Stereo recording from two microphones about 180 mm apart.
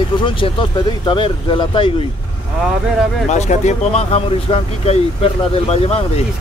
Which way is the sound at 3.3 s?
40° left (ahead or behind).